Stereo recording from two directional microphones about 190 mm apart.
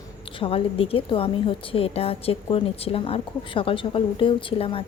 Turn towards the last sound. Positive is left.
turn(degrees=30)  # may be behind; listen again after turning